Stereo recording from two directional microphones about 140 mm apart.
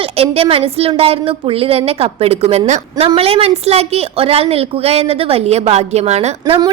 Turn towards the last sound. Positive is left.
turn(degrees=-50)  # may be behind; listen again after turning